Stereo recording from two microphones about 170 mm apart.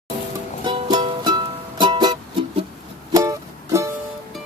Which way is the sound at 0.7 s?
25° right (ahead or behind).